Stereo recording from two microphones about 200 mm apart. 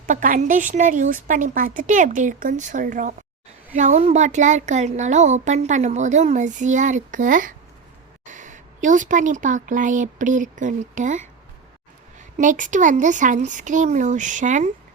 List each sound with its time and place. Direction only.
0.1 s a woman's voice: 40° right (ahead or behind)
12.4 s speech: 40° right (ahead or behind)